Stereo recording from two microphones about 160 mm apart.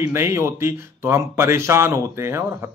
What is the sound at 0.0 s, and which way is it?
Speech, 15° right (ahead or behind).